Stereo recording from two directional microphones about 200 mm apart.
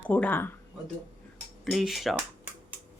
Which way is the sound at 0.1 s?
10° left (ahead or behind).